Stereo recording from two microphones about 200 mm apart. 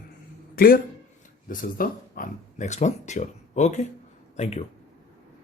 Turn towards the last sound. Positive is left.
turn(degrees=35)  # may be behind; listen again after turning